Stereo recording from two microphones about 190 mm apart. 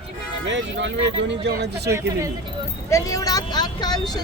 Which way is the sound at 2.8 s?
15° left (ahead or behind).